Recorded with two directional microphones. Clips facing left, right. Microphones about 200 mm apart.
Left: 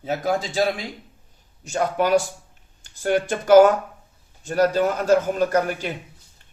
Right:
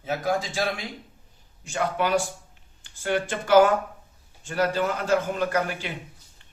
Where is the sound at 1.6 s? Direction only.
40° left (ahead or behind).